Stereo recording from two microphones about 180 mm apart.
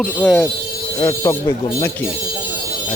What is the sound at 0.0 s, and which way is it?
Speech, centre (ahead or behind).